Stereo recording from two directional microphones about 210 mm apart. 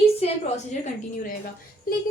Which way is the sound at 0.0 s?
30° left (ahead or behind).